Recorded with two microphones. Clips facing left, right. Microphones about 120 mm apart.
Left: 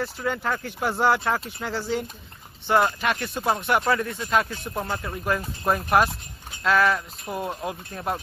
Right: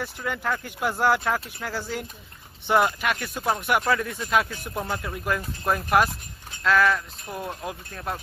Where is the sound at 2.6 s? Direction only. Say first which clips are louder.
Even; 15° right (ahead or behind).